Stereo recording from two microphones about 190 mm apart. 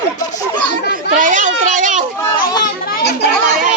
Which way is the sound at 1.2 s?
40° right (ahead or behind).